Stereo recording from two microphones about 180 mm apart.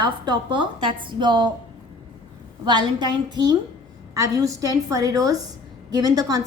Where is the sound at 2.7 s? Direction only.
25° right (ahead or behind).